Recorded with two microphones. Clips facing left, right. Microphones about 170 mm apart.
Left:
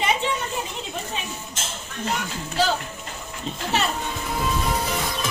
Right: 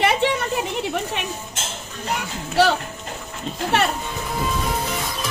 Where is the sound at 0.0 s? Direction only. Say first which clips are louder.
Right 5 dB; 70° right (ahead or behind).